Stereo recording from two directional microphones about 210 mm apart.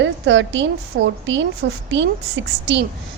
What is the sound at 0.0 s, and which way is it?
A woman's voice, 60° right (ahead or behind).